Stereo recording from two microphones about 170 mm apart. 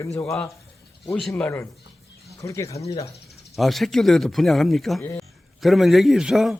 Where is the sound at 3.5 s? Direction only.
Centre (ahead or behind).